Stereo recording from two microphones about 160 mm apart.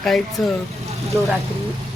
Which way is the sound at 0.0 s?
Centre (ahead or behind).